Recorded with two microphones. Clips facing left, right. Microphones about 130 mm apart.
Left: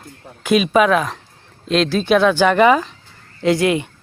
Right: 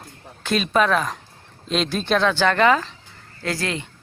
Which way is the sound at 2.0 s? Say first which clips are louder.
Left 5 dB; 10° left (ahead or behind).